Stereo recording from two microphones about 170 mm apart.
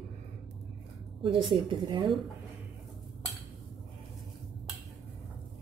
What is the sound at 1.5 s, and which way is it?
Speech, 30° right (ahead or behind).